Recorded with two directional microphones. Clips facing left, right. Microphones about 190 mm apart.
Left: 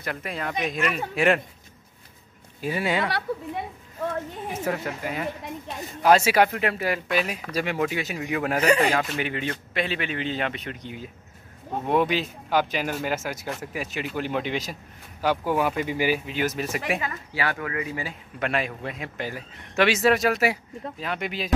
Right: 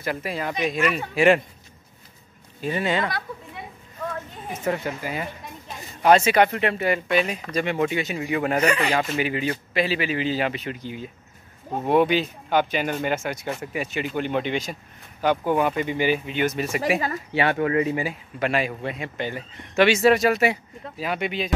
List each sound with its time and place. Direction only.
0.0 s speech: 5° right (ahead or behind)
2.6 s speech: 10° left (ahead or behind)
4.6 s speech: centre (ahead or behind)
8.6 s speech: 40° left (ahead or behind)
8.9 s speech: centre (ahead or behind)
17.3 s speech: 25° right (ahead or behind)
18.4 s speech: centre (ahead or behind)